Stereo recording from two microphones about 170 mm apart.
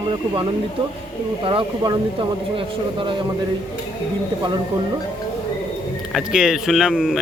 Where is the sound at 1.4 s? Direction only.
30° right (ahead or behind).